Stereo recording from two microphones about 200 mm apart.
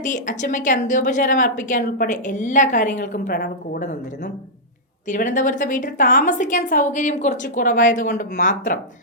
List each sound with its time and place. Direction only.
0.0 s a woman's voice: 40° left (ahead or behind)